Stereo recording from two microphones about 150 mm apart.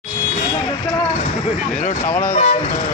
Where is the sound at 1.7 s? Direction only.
60° left (ahead or behind).